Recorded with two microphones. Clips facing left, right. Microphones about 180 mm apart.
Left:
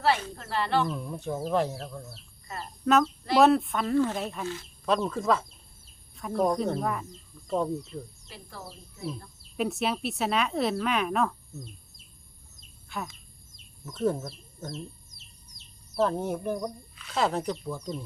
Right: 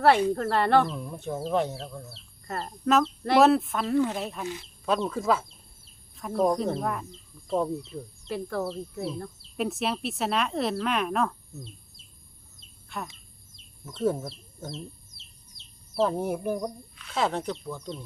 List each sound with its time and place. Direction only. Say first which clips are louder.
0.3 s speech: right 5 dB; 55° right (ahead or behind)
0.9 s speech: left 1 dB; centre (ahead or behind)
8.3 s speech: right 14 dB; 60° right (ahead or behind)
9.6 s speech: even; centre (ahead or behind)
12.9 s speech: even; centre (ahead or behind)
14.7 s chicken: left 1 dB; 25° right (ahead or behind)
16.0 s speech: right 2 dB; 10° right (ahead or behind)
16.9 s speech: left 1 dB; centre (ahead or behind)